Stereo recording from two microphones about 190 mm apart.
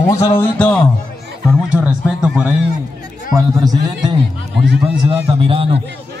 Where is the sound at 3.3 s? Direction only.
20° right (ahead or behind).